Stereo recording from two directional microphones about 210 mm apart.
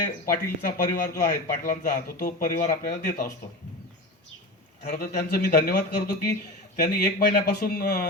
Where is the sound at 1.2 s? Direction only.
40° left (ahead or behind).